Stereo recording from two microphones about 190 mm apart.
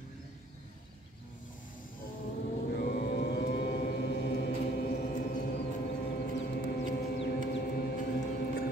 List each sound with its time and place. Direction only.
2.7 s vehicle: 55° left (ahead or behind)